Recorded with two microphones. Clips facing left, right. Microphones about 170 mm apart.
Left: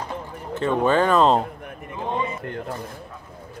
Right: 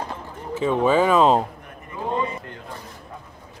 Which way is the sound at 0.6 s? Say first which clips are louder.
Right 1 dB; 5° right (ahead or behind).